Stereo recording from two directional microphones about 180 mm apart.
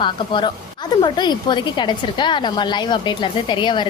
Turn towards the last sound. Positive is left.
turn(degrees=25)  # may be behind; listen again after turning